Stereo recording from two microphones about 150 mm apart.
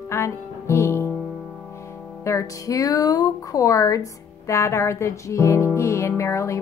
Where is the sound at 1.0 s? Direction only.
10° right (ahead or behind).